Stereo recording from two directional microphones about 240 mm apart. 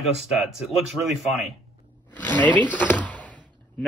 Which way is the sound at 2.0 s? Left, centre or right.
Centre.